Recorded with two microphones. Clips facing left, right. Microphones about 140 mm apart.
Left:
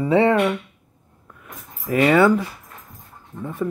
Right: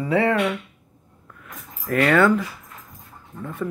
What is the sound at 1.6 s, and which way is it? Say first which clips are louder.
Speech: left 2 dB; centre (ahead or behind).